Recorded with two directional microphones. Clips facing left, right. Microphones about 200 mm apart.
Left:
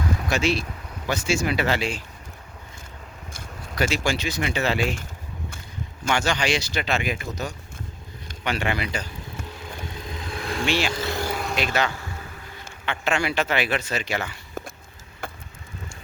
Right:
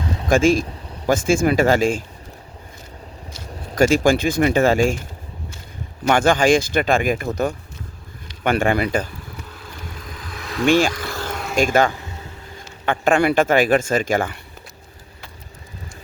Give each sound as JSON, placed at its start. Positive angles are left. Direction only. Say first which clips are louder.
{"t": 0.3, "sound": "speech", "louder": "right 10 dB", "side_deg": -50}
{"t": 3.8, "sound": "speech", "louder": "right 9 dB", "side_deg": -45}
{"t": 6.1, "sound": "speech", "louder": "right 9 dB", "side_deg": -50}
{"t": 10.0, "sound": "vehicle", "louder": "left 2 dB", "side_deg": 25}
{"t": 10.7, "sound": "speech", "louder": "right 10 dB", "side_deg": -50}
{"t": 10.9, "sound": "vehicle", "louder": "left 1 dB", "side_deg": 25}
{"t": 11.3, "sound": "vehicle", "louder": "even", "side_deg": 5}
{"t": 11.5, "sound": "speech", "louder": "right 10 dB", "side_deg": -45}
{"t": 15.2, "sound": "vehicle", "louder": "left 9 dB", "side_deg": 50}